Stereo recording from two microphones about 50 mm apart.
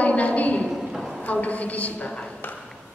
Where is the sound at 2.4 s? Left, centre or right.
Left.